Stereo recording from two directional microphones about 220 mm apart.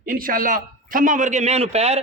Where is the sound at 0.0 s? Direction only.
40° right (ahead or behind).